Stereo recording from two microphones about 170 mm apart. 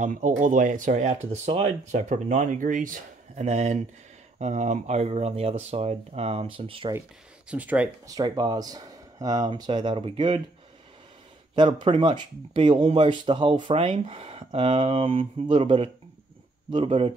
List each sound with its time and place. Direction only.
0.0 s speech: 45° right (ahead or behind)
6.9 s speech: 10° right (ahead or behind)
8.1 s speech: 25° right (ahead or behind)
11.5 s speech: 30° right (ahead or behind)